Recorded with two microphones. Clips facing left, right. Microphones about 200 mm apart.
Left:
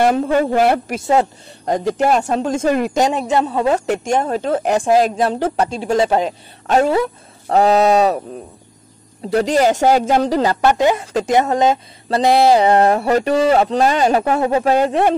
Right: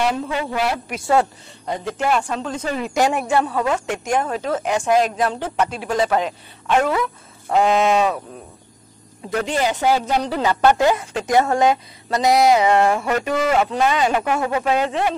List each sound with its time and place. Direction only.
0.0 s a woman's voice: 50° left (ahead or behind)
2.9 s a woman's voice: 20° left (ahead or behind)
3.7 s speech: 35° left (ahead or behind)
9.3 s a woman's voice: 35° left (ahead or behind)
10.7 s a woman's voice: 20° left (ahead or behind); by 15.1 s 50° left (ahead or behind)